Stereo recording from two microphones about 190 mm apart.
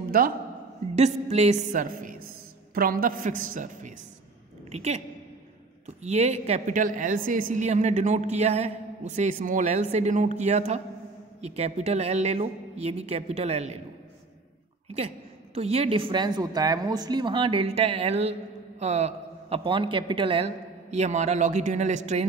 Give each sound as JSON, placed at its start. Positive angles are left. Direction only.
{"t": 0.1, "sound": "a woman's voice", "side_deg": -50}
{"t": 0.9, "sound": "a woman's voice", "side_deg": -35}
{"t": 14.9, "sound": "a woman's voice", "side_deg": -35}